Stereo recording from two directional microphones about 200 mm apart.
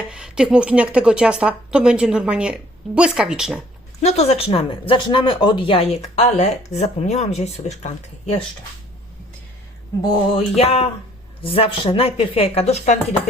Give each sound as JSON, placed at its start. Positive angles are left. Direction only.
{"t": 0.1, "sound": "a woman's voice", "side_deg": -5}
{"t": 4.0, "sound": "speech", "side_deg": 35}
{"t": 10.3, "sound": "speech", "side_deg": 30}